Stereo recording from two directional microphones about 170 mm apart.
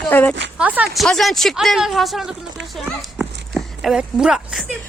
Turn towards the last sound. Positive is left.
turn(degrees=-5)  # may be behind; listen again after turning